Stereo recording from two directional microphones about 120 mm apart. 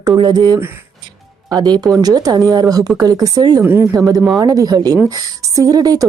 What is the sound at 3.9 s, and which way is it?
Speech, 30° right (ahead or behind).